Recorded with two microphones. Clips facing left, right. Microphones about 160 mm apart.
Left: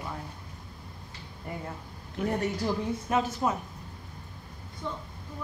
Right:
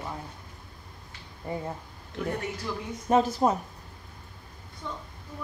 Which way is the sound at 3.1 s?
35° right (ahead or behind).